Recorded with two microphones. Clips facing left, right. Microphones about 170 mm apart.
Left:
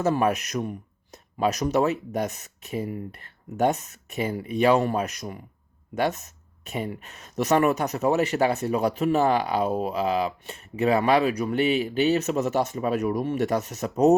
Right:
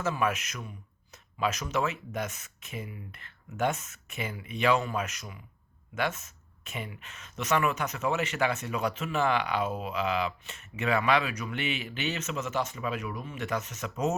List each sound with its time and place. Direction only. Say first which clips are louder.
0.0 s speech: left 7 dB; 35° left (ahead or behind)